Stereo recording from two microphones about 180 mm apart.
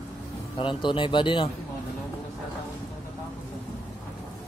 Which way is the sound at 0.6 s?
25° left (ahead or behind).